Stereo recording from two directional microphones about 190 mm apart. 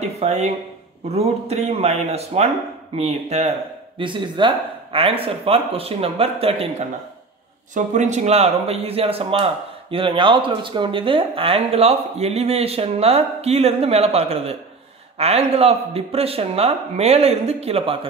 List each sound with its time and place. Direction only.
0.2 s speech: 35° right (ahead or behind)
7.7 s speech: 40° right (ahead or behind)